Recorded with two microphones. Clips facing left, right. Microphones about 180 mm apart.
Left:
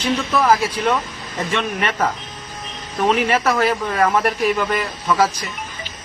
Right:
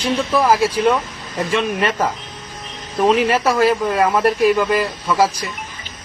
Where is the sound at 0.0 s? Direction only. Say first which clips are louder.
Right 2 dB; 10° right (ahead or behind).